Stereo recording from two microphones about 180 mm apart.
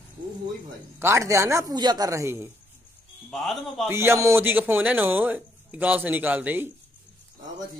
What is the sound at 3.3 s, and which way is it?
Speech, centre (ahead or behind).